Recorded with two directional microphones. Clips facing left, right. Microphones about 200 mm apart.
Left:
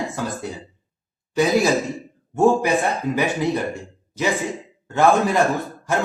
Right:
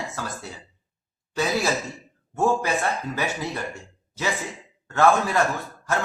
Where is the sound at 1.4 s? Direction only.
15° left (ahead or behind).